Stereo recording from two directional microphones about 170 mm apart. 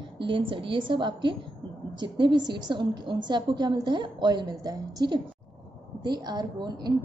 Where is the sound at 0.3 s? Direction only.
30° right (ahead or behind).